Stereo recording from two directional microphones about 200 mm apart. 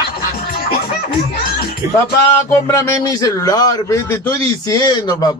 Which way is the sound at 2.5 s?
10° left (ahead or behind).